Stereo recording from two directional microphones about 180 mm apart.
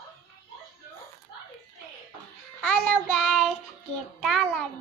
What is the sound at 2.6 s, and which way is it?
Child singing, 5° left (ahead or behind).